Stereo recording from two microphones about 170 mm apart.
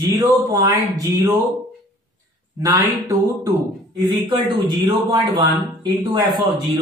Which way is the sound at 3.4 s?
25° right (ahead or behind).